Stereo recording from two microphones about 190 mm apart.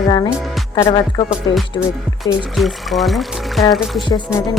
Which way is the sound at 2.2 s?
Centre (ahead or behind).